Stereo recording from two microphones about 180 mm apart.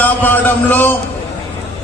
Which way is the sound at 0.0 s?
10° left (ahead or behind).